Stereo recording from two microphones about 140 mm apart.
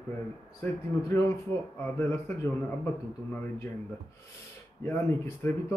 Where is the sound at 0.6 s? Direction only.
15° left (ahead or behind).